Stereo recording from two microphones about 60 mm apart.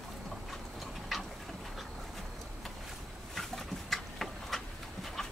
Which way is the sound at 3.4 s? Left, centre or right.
Centre.